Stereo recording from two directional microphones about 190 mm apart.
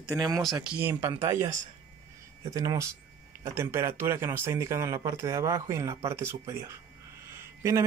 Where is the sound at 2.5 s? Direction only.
15° right (ahead or behind).